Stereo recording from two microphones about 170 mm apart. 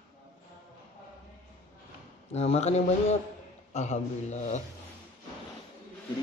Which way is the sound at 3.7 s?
40° left (ahead or behind).